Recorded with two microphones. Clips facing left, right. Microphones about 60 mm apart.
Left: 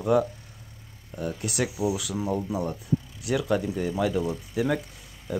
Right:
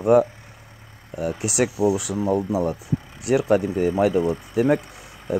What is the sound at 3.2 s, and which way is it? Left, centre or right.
Speech, right.